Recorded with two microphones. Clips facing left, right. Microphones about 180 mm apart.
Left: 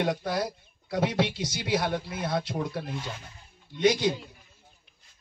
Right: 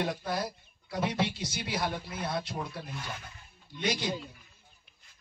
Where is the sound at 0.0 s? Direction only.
90° left.